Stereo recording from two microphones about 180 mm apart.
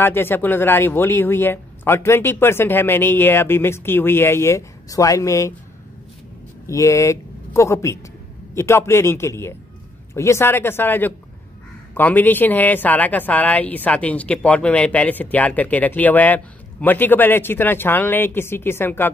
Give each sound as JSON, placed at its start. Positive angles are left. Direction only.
{"t": 0.0, "sound": "speech", "side_deg": 10}
{"t": 6.7, "sound": "speech", "side_deg": 15}